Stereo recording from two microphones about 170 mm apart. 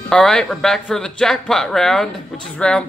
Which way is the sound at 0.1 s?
5° left (ahead or behind).